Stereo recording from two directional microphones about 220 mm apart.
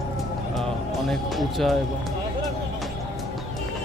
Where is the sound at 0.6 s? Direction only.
Centre (ahead or behind).